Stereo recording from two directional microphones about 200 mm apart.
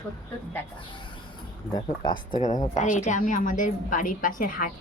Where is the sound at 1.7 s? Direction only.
20° left (ahead or behind).